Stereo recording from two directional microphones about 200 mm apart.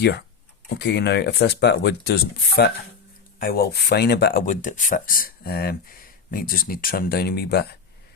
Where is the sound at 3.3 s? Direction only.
50° left (ahead or behind).